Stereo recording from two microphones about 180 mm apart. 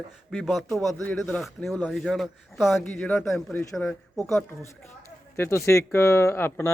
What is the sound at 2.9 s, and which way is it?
A man's voice, 10° left (ahead or behind).